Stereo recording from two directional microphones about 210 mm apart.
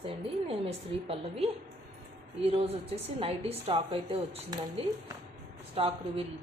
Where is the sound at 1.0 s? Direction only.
30° right (ahead or behind).